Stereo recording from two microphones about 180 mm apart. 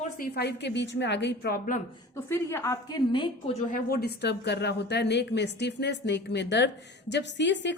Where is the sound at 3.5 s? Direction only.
50° left (ahead or behind); by 7.8 s 80° left.